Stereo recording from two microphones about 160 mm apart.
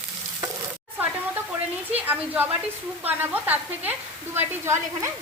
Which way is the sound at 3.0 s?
10° right (ahead or behind).